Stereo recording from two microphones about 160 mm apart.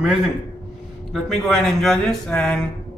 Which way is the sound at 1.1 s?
Centre (ahead or behind).